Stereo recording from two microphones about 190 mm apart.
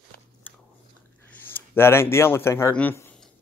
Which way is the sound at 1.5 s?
10° left (ahead or behind).